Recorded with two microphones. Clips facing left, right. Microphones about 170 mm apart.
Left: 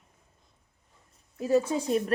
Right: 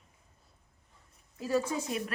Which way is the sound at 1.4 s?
20° left (ahead or behind).